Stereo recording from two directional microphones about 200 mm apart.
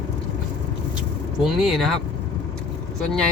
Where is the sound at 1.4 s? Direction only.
Centre (ahead or behind).